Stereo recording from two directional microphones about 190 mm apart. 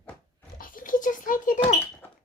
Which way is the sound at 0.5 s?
45° left (ahead or behind).